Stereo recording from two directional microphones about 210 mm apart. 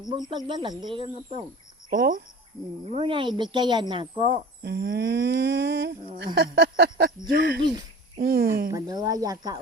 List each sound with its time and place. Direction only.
0.1 s speech: 20° right (ahead or behind)
1.9 s humming: 45° right (ahead or behind)
2.8 s speech: 25° right (ahead or behind)
4.6 s humming: 50° right (ahead or behind)
8.7 s speech: 15° right (ahead or behind)